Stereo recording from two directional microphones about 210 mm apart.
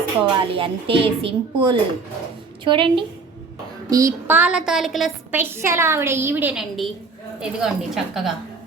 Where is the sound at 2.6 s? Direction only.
25° right (ahead or behind); by 7.7 s 5° right (ahead or behind).